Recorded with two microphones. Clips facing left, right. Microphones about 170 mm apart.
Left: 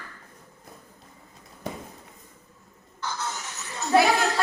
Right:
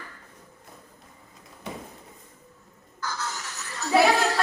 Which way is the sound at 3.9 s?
5° right (ahead or behind).